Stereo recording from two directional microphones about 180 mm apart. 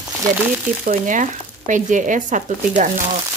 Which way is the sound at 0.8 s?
45° right (ahead or behind).